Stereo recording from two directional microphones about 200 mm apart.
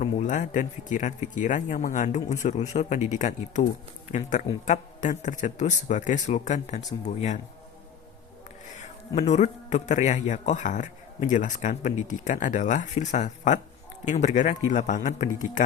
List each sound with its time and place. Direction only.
0.0 s speech: 40° left (ahead or behind)
8.8 s speech: 35° left (ahead or behind)